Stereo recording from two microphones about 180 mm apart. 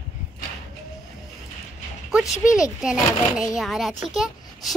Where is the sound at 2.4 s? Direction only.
5° right (ahead or behind).